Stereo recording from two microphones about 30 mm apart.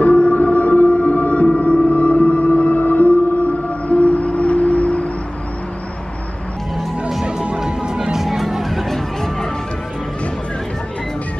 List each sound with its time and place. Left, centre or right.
0.0 s music: left
3.9 s music: left
7.6 s music: right; by 9.5 s centre